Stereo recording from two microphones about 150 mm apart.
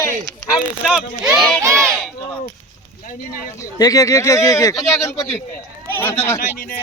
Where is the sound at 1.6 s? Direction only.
20° right (ahead or behind).